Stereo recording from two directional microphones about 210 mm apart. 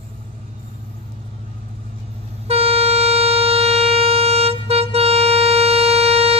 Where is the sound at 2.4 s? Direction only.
30° right (ahead or behind).